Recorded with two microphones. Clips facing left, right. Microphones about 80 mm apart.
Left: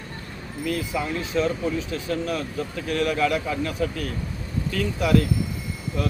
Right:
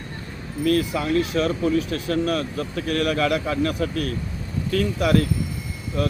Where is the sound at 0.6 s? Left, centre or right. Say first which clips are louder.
Right 5 dB; right.